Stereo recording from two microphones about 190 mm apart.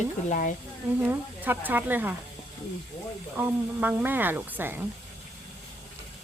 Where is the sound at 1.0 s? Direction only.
10° right (ahead or behind).